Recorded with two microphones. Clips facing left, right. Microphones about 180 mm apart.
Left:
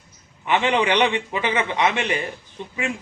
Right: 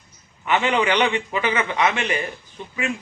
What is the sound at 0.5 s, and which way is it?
A man's voice, 20° left (ahead or behind).